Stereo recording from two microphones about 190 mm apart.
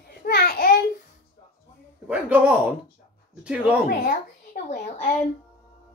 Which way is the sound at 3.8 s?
45° left (ahead or behind).